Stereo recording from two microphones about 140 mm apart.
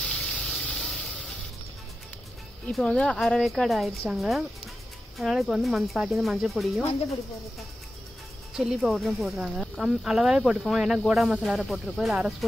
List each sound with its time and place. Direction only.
0.0 s a sound: 5° left (ahead or behind)
2.7 s speech: 5° left (ahead or behind)
8.5 s speech: centre (ahead or behind)